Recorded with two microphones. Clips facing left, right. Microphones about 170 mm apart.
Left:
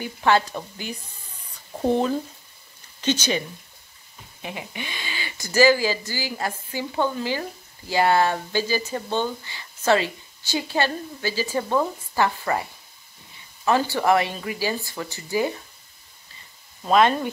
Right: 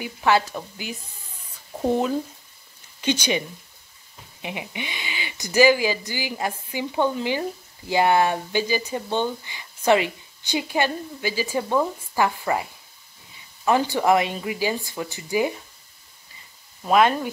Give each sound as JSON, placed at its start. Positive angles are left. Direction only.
{"t": 0.0, "sound": "speech", "side_deg": -5}
{"t": 13.7, "sound": "speech", "side_deg": -15}
{"t": 16.8, "sound": "speech", "side_deg": -10}